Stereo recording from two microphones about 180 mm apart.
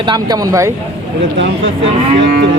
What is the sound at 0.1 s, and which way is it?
Speech, 20° right (ahead or behind).